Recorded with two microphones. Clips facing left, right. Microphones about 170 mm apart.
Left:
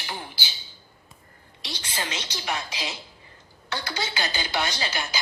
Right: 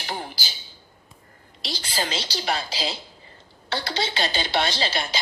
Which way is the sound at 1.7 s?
35° right (ahead or behind).